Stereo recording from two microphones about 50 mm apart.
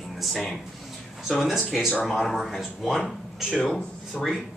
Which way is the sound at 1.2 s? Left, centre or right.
Centre.